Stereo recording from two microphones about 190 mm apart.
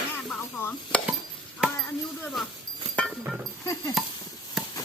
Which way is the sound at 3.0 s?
Centre (ahead or behind).